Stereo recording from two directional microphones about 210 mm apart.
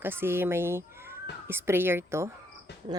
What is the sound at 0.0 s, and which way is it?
Speech, 10° right (ahead or behind).